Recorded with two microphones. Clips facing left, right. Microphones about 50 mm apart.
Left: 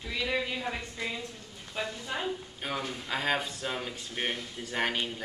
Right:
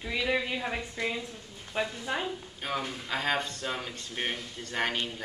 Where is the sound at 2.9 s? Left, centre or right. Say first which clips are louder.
Left 1 dB; centre.